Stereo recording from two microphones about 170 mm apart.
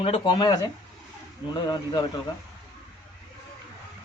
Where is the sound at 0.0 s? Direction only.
30° left (ahead or behind).